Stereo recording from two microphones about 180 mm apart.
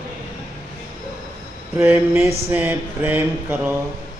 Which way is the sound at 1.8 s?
10° right (ahead or behind).